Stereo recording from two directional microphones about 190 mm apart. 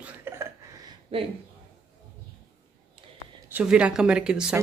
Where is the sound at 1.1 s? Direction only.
30° right (ahead or behind).